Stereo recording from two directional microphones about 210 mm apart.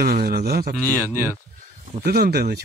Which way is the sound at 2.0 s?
45° right (ahead or behind).